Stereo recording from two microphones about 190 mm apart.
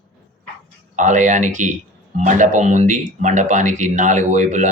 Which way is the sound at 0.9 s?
40° right (ahead or behind).